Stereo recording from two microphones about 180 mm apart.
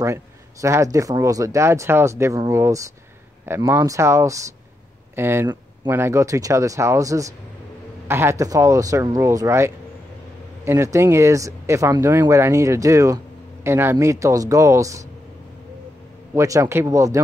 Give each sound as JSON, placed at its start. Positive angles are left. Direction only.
{"t": 0.0, "sound": "speech", "side_deg": -15}
{"t": 16.3, "sound": "speech", "side_deg": -15}